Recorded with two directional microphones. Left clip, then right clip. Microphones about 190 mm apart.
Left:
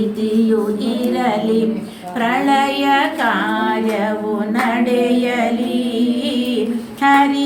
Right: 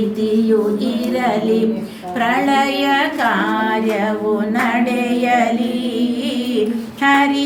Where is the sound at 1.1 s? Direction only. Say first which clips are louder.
Right 1 dB; 15° right (ahead or behind).